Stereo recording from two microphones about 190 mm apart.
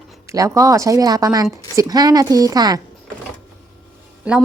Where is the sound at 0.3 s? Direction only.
15° right (ahead or behind).